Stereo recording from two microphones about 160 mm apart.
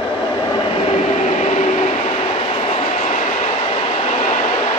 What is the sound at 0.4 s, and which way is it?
Train, 30° left (ahead or behind).